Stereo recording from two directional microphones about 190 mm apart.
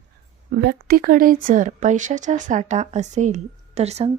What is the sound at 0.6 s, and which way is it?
A woman's voice, 55° right (ahead or behind).